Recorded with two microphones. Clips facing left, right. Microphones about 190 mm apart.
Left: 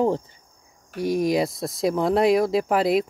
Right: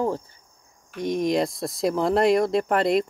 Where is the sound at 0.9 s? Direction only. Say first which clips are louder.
Left 1 dB; 5° left (ahead or behind).